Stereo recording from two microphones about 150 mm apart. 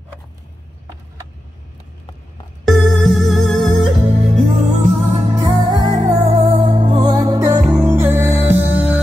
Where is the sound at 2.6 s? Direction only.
Centre (ahead or behind).